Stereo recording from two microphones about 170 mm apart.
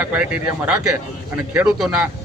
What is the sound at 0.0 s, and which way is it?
A man's voice, 10° right (ahead or behind).